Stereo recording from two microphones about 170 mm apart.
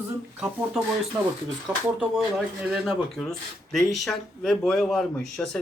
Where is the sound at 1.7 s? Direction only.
10° right (ahead or behind).